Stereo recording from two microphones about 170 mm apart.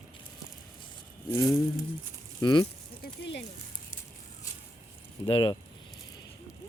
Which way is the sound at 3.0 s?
90° left.